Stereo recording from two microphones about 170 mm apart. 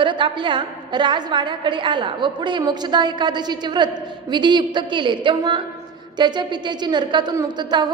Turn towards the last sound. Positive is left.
turn(degrees=-25)  # may be behind; listen again after turning